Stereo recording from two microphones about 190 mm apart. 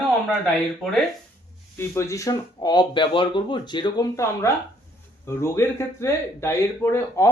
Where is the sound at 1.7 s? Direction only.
10° left (ahead or behind).